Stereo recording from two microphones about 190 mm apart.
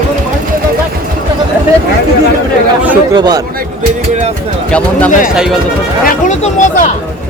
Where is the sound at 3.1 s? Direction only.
20° right (ahead or behind).